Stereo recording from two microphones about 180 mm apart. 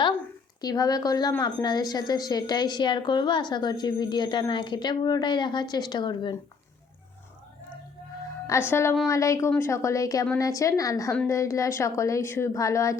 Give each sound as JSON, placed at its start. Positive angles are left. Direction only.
{"t": 0.6, "sound": "a woman's voice", "side_deg": 20}
{"t": 8.4, "sound": "a woman's voice", "side_deg": 15}